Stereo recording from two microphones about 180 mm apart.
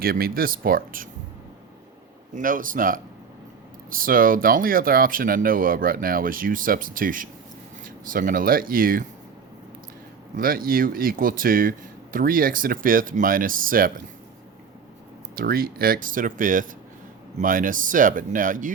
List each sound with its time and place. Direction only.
0.0 s speech: 55° right (ahead or behind)
2.3 s speech: 50° right (ahead or behind)
10.3 s speech: 50° right (ahead or behind)
15.4 s speech: 55° right (ahead or behind)